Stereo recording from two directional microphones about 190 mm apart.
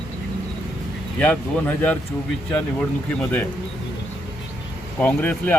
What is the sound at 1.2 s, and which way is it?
Speech, 10° left (ahead or behind).